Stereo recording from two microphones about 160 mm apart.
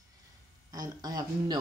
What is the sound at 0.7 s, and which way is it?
Speech, 25° right (ahead or behind).